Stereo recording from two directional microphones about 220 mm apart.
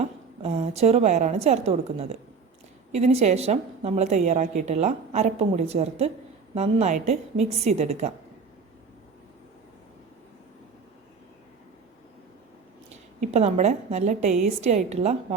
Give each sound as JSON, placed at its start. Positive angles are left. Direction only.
{"t": 0.4, "sound": "a woman's voice", "side_deg": -30}
{"t": 13.1, "sound": "a woman's voice", "side_deg": -30}